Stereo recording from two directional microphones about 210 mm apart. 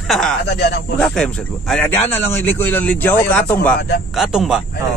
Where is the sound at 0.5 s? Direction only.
55° left (ahead or behind).